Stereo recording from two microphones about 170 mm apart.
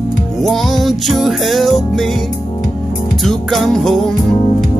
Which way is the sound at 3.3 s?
Centre (ahead or behind).